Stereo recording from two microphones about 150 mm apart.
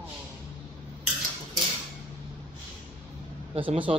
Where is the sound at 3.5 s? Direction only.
35° right (ahead or behind).